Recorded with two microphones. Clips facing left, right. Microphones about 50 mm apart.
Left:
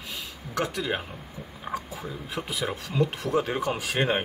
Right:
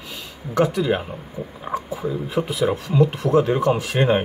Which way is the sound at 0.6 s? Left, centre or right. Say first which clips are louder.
Right 9 dB; centre.